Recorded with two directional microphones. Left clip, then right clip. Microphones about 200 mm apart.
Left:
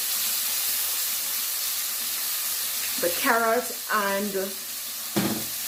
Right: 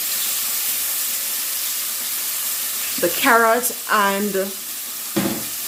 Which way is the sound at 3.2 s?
45° right (ahead or behind).